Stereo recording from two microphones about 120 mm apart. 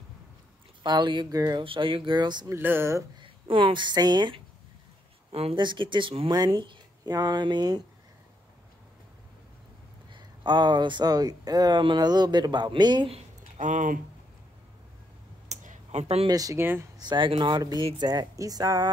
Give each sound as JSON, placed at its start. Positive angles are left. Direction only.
{"t": 0.8, "sound": "speech", "side_deg": -40}
{"t": 2.5, "sound": "speech", "side_deg": -20}
{"t": 3.2, "sound": "a woman's voice", "side_deg": -45}
{"t": 5.3, "sound": "speech", "side_deg": -50}
{"t": 10.1, "sound": "speech", "side_deg": -40}
{"t": 13.6, "sound": "speech", "side_deg": -90}
{"t": 15.4, "sound": "a sound", "side_deg": -80}
{"t": 16.3, "sound": "speech", "side_deg": -30}
{"t": 17.0, "sound": "speech", "side_deg": -40}